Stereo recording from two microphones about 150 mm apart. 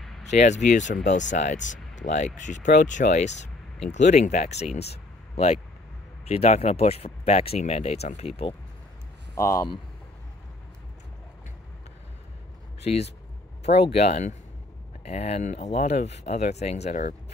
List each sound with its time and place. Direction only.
0.3 s speech: 50° left (ahead or behind)
4.7 s a sound: 45° left (ahead or behind)
6.2 s speech: 45° left (ahead or behind)
9.3 s speech: 25° left (ahead or behind)
13.7 s speech: 45° left (ahead or behind)